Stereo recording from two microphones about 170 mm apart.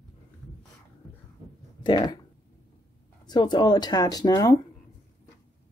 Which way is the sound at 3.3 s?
25° left (ahead or behind).